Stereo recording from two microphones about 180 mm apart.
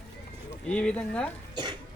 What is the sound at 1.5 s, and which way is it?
Speech, 25° right (ahead or behind).